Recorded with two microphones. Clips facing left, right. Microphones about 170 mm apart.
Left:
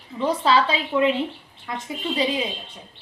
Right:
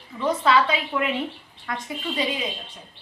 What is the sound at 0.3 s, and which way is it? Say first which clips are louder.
Speech: even; 30° left (ahead or behind).